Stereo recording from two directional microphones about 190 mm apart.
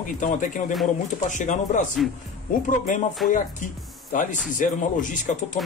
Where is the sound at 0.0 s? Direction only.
40° left (ahead or behind).